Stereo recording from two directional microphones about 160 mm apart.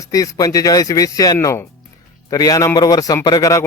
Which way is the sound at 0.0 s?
20° left (ahead or behind).